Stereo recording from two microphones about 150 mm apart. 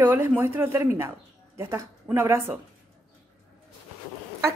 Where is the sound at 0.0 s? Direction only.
15° right (ahead or behind).